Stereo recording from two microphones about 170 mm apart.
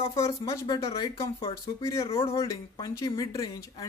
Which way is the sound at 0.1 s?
20° left (ahead or behind).